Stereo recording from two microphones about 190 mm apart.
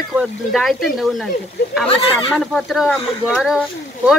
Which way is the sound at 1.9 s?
30° left (ahead or behind).